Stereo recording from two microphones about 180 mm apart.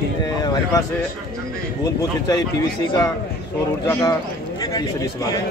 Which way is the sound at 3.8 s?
15° left (ahead or behind).